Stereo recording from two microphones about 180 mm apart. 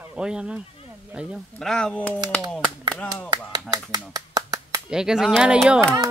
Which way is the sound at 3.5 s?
20° right (ahead or behind).